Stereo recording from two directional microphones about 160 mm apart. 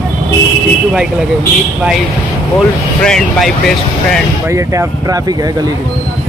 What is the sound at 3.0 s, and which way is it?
Speech, 5° left (ahead or behind).